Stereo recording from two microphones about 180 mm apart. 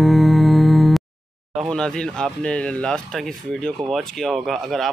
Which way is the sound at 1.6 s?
5° left (ahead or behind).